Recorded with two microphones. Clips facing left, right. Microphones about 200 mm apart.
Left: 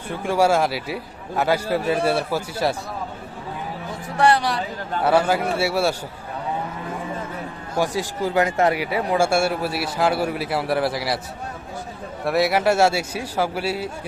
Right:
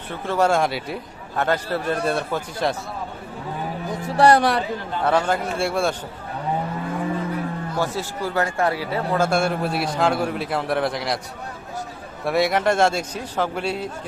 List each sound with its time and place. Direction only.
0.2 s a man's voice: 10° left (ahead or behind)
4.2 s speech: 45° right (ahead or behind)
5.0 s a man's voice: 10° left (ahead or behind)
7.8 s a man's voice: 15° left (ahead or behind)
12.2 s a man's voice: centre (ahead or behind)